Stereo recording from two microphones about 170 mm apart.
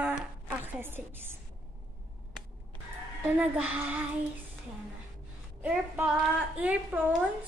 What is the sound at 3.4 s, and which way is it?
Speech, 10° right (ahead or behind).